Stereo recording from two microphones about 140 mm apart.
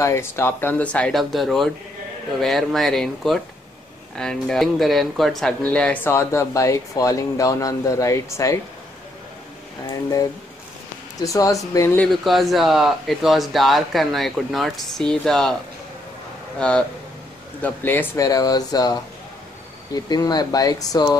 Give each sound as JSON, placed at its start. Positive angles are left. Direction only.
{"t": 0.0, "sound": "speech", "side_deg": 20}
{"t": 6.1, "sound": "speech", "side_deg": 20}
{"t": 11.2, "sound": "speech", "side_deg": 25}
{"t": 12.1, "sound": "speech", "side_deg": 0}
{"t": 16.5, "sound": "speech", "side_deg": 5}
{"t": 18.2, "sound": "speech", "side_deg": 25}